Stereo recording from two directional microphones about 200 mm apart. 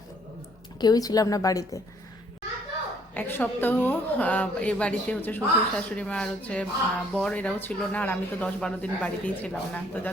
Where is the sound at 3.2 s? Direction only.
10° left (ahead or behind).